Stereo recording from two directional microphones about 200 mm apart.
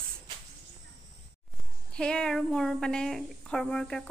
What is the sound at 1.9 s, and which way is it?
A woman's voice, 5° left (ahead or behind).